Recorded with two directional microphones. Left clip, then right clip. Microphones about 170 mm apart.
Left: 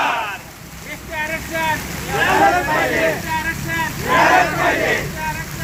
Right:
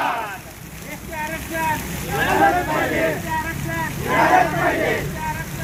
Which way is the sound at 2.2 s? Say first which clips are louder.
Left 3 dB; centre (ahead or behind).